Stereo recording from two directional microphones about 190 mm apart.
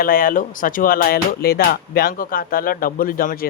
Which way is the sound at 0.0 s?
50° left (ahead or behind).